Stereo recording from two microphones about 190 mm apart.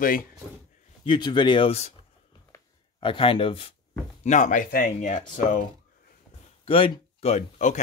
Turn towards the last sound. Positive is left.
turn(degrees=35)  # may be behind; listen again after turning